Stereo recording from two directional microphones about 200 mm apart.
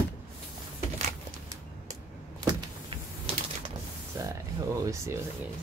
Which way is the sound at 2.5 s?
25° right (ahead or behind).